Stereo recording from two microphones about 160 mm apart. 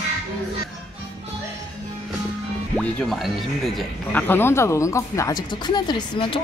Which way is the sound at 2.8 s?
5° left (ahead or behind).